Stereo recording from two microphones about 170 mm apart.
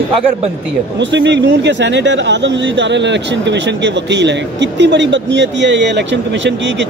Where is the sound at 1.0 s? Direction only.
90° right.